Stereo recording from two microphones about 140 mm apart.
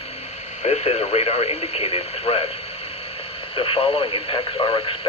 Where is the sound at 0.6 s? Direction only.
50° left (ahead or behind).